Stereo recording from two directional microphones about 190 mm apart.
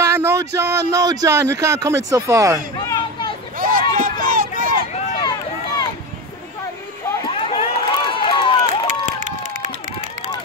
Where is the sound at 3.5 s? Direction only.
45° right (ahead or behind).